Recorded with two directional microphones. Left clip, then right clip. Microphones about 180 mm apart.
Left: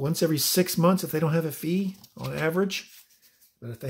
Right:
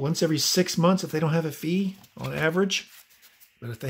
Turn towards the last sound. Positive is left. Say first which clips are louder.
# right 2 dB
turn(degrees=-15)  # may be behind; listen again after turning